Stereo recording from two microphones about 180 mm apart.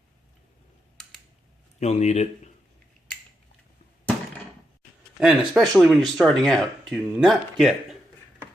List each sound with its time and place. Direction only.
1.8 s speech: 40° left (ahead or behind)
5.2 s speech: centre (ahead or behind)